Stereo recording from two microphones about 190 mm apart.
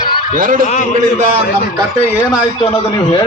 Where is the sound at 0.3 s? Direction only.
45° right (ahead or behind).